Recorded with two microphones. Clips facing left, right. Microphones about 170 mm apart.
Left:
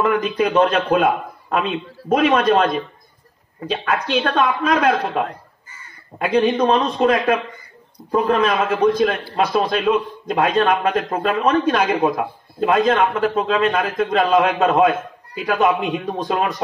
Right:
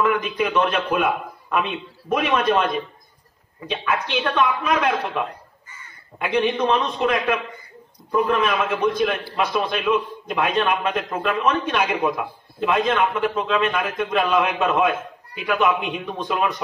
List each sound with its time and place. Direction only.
0.0 s a man's voice: 40° left (ahead or behind)
4.2 s a man's voice: 55° left (ahead or behind); by 16.6 s 40° left (ahead or behind)